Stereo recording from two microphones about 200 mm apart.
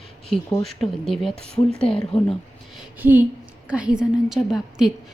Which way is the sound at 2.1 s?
30° left (ahead or behind).